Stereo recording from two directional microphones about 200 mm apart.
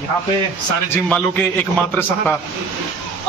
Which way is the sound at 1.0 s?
10° left (ahead or behind).